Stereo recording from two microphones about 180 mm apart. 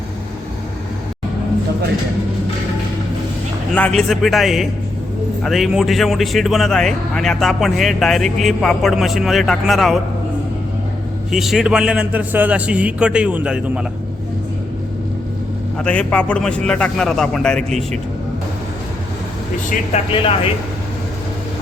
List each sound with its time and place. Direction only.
3.8 s speech: 5° left (ahead or behind)
11.3 s speech: centre (ahead or behind)
15.8 s speech: 5° left (ahead or behind)
19.9 s speech: 30° left (ahead or behind)